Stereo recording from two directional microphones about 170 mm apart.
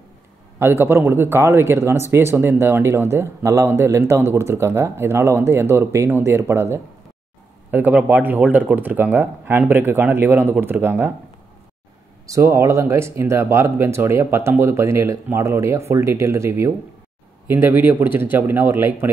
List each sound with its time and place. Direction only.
0.6 s speech: 15° right (ahead or behind)
12.3 s speech: 15° right (ahead or behind)